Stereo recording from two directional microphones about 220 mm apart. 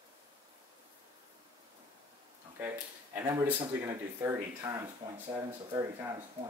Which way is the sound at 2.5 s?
10° right (ahead or behind).